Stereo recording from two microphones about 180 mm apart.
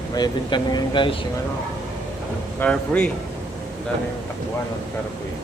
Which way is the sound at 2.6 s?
5° left (ahead or behind).